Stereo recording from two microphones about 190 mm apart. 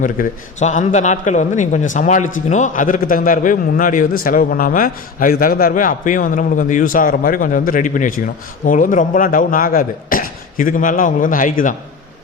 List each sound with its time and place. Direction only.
0.0 s a man's voice: 40° left (ahead or behind)